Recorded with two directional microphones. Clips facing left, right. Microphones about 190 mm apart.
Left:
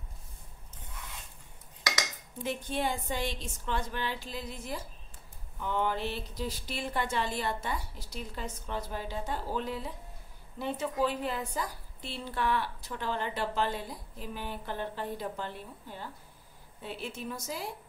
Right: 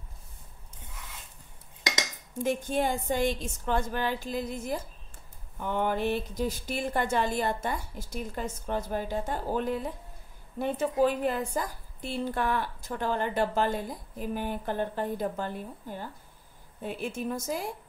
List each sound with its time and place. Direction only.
2.3 s a woman's voice: 45° right (ahead or behind)